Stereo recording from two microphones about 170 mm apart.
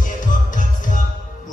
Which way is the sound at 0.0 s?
50° left (ahead or behind).